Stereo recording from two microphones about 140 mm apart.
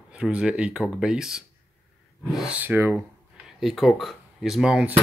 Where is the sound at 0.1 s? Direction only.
5° right (ahead or behind).